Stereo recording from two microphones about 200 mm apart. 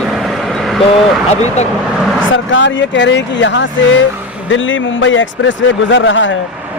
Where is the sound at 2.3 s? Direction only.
65° left (ahead or behind).